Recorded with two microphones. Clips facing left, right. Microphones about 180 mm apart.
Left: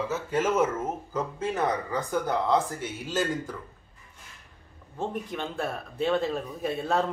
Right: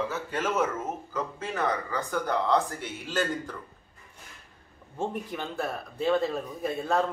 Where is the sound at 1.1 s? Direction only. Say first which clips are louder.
Left 4 dB; 25° left (ahead or behind).